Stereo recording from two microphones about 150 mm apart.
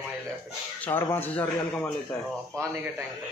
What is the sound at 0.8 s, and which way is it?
Speech, 15° left (ahead or behind).